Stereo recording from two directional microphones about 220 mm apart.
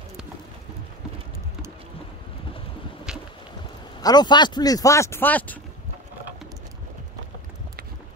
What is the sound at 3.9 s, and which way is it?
A man's voice, 20° left (ahead or behind).